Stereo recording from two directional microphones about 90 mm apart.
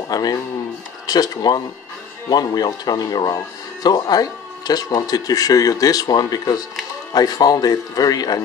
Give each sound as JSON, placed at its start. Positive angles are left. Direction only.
{"t": 0.1, "sound": "speech", "side_deg": 45}